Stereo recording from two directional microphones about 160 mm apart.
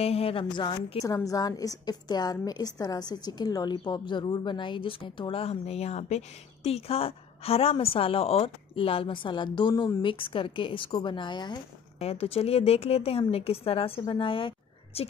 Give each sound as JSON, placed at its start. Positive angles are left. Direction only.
{"t": 0.0, "sound": "a woman's voice", "side_deg": 40}
{"t": 1.0, "sound": "a woman's voice", "side_deg": 20}
{"t": 12.0, "sound": "a woman's voice", "side_deg": 40}